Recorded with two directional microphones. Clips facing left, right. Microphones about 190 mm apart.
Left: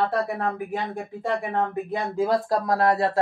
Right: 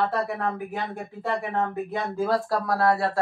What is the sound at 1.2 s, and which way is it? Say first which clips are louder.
Speech: left 1 dB; 15° left (ahead or behind).